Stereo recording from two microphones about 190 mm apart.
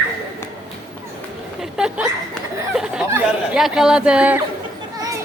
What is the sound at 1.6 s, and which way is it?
Hiccup, 5° right (ahead or behind).